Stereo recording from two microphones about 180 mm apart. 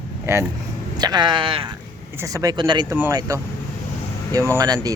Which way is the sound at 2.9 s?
10° right (ahead or behind).